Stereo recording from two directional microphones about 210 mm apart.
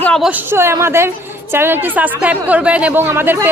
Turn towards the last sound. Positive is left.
turn(degrees=-10)  # may be behind; listen again after turning